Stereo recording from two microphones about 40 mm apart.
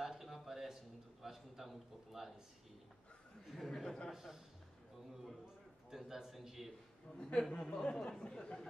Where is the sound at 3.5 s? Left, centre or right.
Centre.